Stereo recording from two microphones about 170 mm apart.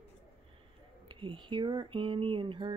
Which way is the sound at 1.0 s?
30° right (ahead or behind).